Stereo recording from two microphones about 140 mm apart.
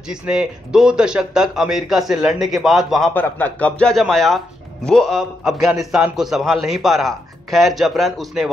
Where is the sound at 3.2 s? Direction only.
15° left (ahead or behind).